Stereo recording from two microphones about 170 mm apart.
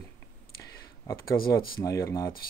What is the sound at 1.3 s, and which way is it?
Speech, 60° left (ahead or behind).